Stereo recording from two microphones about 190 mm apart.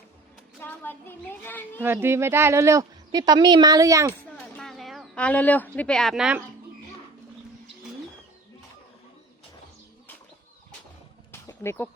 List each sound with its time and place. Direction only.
0.6 s a woman's voice: 10° left (ahead or behind)
1.8 s speech: 10° right (ahead or behind)
4.5 s speech: centre (ahead or behind)
11.3 s a sound: 15° left (ahead or behind)